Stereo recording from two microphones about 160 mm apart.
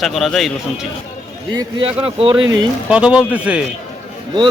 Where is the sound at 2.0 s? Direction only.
35° right (ahead or behind).